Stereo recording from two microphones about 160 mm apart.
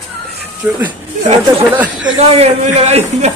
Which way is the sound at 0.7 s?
5° right (ahead or behind).